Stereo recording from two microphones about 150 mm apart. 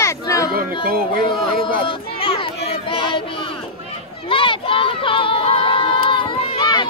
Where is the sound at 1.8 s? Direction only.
40° left (ahead or behind).